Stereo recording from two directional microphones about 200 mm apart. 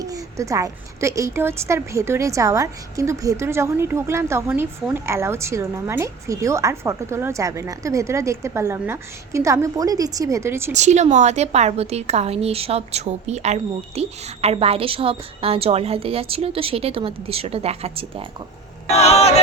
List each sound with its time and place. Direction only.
0.0 s a woman's voice: 15° right (ahead or behind)
10.8 s a woman's voice: 35° right (ahead or behind)
18.9 s a sound: 30° left (ahead or behind)